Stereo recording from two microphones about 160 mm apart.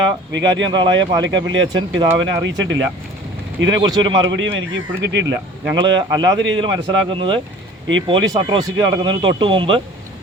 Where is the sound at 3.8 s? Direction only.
25° right (ahead or behind).